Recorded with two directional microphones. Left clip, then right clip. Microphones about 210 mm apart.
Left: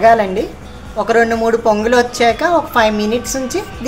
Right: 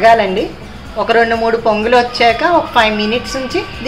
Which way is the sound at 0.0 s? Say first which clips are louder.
Right 1 dB; 25° left (ahead or behind).